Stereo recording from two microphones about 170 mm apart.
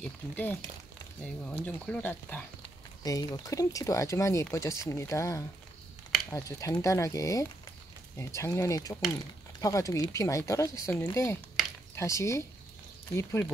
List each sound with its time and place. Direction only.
0.0 s speech: 10° left (ahead or behind)
3.0 s speech: 20° left (ahead or behind)